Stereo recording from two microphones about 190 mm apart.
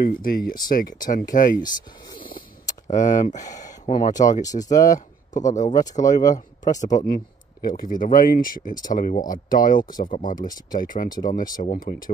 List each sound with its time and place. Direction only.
0.0 s speech: 50° left (ahead or behind)
2.1 s a sound: 50° left (ahead or behind)
2.9 s speech: 40° left (ahead or behind)
4.6 s speech: 20° left (ahead or behind)
5.4 s speech: 40° left (ahead or behind)